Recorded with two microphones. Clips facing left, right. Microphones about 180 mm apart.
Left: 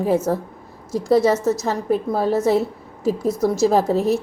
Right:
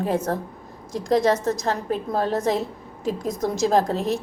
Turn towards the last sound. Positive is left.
turn(degrees=10)  # may be behind; listen again after turning